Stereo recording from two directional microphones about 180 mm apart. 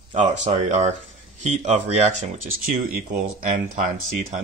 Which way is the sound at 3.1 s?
50° right (ahead or behind).